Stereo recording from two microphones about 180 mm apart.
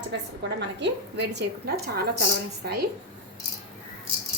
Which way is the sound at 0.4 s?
70° right (ahead or behind).